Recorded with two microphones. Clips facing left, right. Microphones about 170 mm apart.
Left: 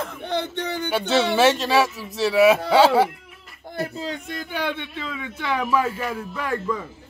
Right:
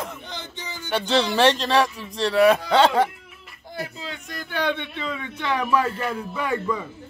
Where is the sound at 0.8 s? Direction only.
Centre (ahead or behind).